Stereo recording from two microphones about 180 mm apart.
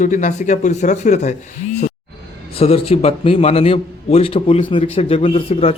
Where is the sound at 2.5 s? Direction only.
35° left (ahead or behind).